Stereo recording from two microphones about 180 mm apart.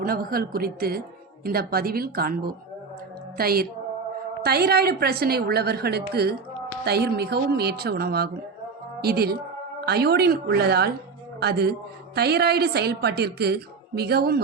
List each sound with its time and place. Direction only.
0.0 s a woman's voice: 55° right (ahead or behind)